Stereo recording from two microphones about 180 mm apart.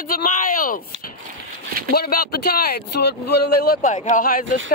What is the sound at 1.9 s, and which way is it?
Speech, 55° left (ahead or behind).